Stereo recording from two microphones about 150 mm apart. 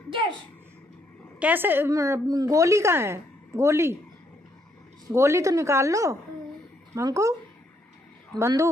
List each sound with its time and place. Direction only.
1.4 s a woman's voice: 15° right (ahead or behind)
5.1 s a woman's voice: 20° right (ahead or behind)
8.4 s a woman's voice: 20° right (ahead or behind)